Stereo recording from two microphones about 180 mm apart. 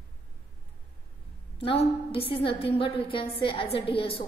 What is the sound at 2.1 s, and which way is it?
A woman's voice, 30° left (ahead or behind).